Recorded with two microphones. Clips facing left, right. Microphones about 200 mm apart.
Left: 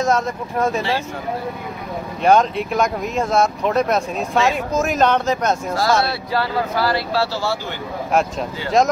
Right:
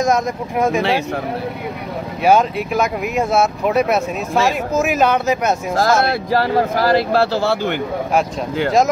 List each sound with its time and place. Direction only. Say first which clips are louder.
0.0 s speech: right 2 dB; 10° right (ahead or behind)
2.2 s speech: right 1 dB; 5° right (ahead or behind)
5.8 s speech: right 5 dB; 45° right (ahead or behind)